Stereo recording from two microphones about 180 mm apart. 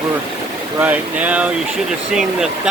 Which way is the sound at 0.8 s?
10° right (ahead or behind).